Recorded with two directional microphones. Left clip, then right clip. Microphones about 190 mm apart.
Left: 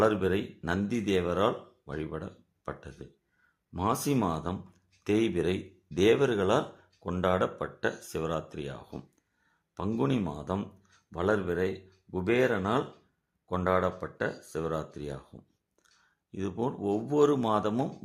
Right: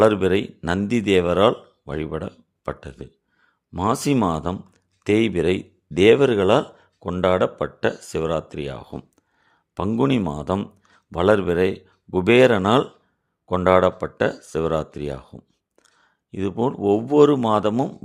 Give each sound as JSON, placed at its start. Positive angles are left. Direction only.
{"t": 0.0, "sound": "speech", "side_deg": -40}